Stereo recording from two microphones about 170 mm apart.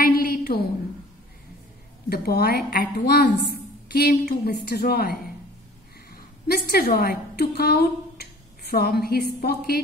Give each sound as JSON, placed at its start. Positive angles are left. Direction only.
{"t": 0.0, "sound": "a sound", "side_deg": 60}
{"t": 2.0, "sound": "a woman's voice", "side_deg": 65}
{"t": 3.9, "sound": "a woman's voice", "side_deg": 65}